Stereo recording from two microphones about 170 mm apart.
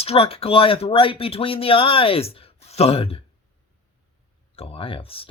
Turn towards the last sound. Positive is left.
turn(degrees=35)  # may be behind; listen again after turning